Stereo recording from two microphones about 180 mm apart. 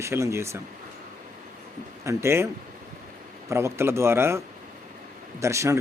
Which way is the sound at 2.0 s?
15° right (ahead or behind).